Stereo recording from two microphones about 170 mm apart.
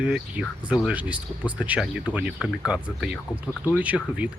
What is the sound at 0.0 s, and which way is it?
Speech, 5° right (ahead or behind).